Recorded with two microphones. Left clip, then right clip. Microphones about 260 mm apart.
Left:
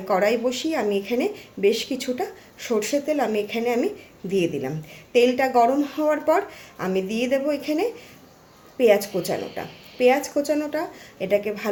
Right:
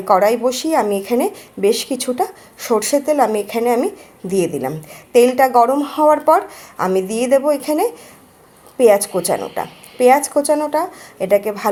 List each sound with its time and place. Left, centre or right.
0.0 s a woman's voice: centre